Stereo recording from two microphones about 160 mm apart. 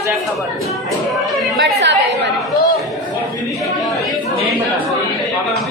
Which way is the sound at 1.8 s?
90° right.